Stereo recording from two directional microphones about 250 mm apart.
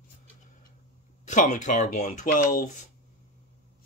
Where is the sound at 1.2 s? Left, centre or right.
Left.